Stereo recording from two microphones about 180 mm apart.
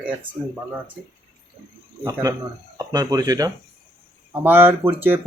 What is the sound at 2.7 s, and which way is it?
Speech, 20° right (ahead or behind).